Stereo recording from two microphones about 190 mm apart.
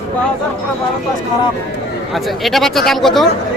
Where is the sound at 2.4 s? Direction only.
Centre (ahead or behind).